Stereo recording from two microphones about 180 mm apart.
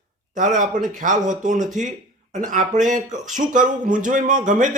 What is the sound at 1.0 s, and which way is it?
Speech, 45° right (ahead or behind).